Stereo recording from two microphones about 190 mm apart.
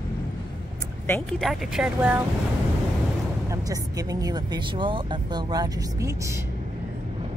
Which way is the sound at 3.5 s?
20° right (ahead or behind).